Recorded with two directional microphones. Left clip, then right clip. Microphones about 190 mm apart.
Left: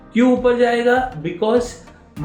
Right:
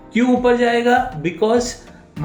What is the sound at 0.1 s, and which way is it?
Speech, 45° right (ahead or behind).